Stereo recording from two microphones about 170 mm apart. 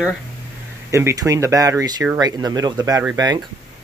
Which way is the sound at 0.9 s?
20° right (ahead or behind).